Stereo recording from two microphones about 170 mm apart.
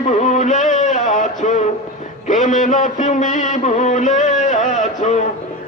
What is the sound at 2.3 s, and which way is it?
Music, 45° left (ahead or behind).